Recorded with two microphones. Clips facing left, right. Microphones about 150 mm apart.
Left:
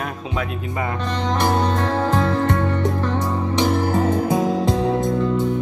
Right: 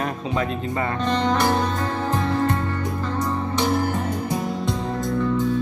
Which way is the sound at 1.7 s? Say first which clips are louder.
Left 4 dB; 85° left.